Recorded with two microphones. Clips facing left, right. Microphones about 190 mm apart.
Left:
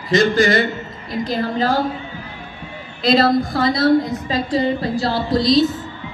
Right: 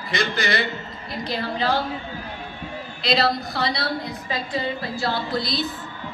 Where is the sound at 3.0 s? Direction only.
50° left (ahead or behind).